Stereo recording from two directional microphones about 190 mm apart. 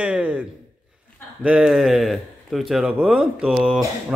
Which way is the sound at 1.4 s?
5° right (ahead or behind).